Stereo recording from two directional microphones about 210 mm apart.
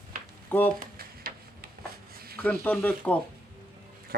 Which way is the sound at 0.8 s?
45° right (ahead or behind).